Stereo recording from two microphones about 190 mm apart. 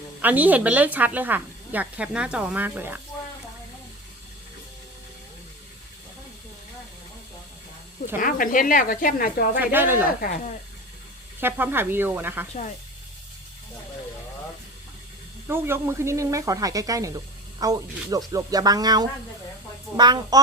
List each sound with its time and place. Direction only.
0.2 s a woman's voice: 10° right (ahead or behind)
8.2 s speech: 45° left (ahead or behind)
9.6 s a woman's voice: 10° right (ahead or behind)
10.2 s speech: 40° left (ahead or behind)
11.3 s a woman's voice: 10° right (ahead or behind)
15.4 s a woman's voice: 10° right (ahead or behind)